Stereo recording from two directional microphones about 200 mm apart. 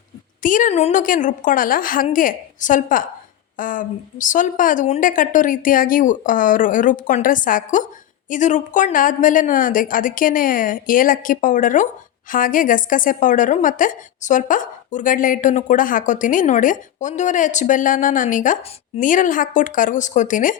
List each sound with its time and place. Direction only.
0.4 s a woman's voice: 40° left (ahead or behind)